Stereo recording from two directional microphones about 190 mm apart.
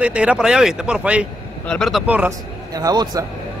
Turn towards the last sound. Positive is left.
turn(degrees=-20)  # may be behind; listen again after turning